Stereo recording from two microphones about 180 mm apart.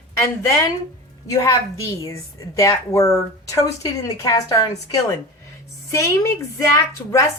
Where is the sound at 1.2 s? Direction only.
20° left (ahead or behind).